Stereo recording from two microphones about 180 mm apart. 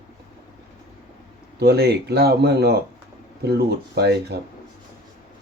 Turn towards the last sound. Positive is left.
turn(degrees=-65)  # may be behind; listen again after turning